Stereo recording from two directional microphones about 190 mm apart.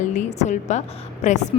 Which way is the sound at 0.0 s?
40° left (ahead or behind).